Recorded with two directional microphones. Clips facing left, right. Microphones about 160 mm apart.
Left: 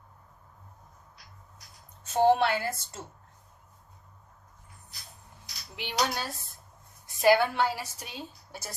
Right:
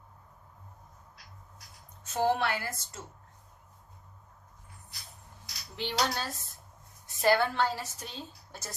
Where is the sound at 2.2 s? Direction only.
30° left (ahead or behind).